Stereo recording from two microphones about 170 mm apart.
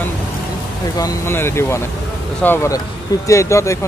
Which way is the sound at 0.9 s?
15° left (ahead or behind).